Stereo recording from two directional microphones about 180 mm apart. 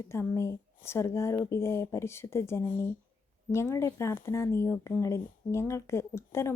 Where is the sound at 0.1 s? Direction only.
15° left (ahead or behind).